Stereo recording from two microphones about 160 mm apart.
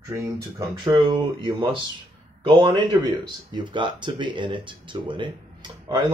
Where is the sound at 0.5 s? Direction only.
30° right (ahead or behind).